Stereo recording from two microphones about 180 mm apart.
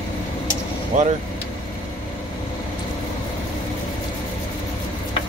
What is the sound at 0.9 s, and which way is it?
Speech, 45° right (ahead or behind).